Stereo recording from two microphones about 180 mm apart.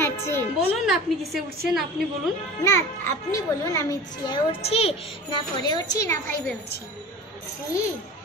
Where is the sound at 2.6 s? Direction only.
15° left (ahead or behind).